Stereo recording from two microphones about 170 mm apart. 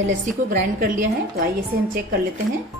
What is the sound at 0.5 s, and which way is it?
Speech, 60° right (ahead or behind).